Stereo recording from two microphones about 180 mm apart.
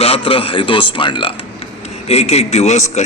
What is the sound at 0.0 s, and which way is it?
A man's voice, 30° left (ahead or behind).